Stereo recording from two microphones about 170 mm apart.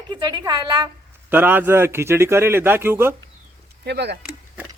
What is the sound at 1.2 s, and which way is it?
A man's voice, 10° right (ahead or behind).